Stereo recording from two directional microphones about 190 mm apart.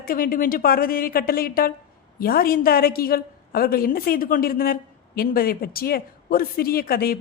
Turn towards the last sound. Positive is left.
turn(degrees=50)  # may be behind; listen again after turning